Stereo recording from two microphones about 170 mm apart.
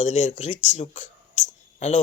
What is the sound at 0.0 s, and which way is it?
Speech, 40° left (ahead or behind).